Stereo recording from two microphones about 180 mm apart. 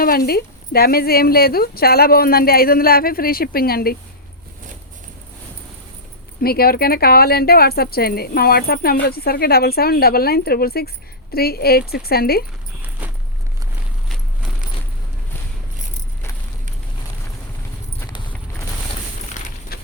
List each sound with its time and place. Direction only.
0.0 s speech: 55° left (ahead or behind)
6.4 s speech: 60° left (ahead or behind)
13.0 s walk: 10° right (ahead or behind)
19.7 s a sound: 55° left (ahead or behind)